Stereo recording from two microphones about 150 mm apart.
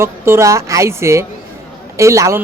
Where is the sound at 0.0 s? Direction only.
20° right (ahead or behind).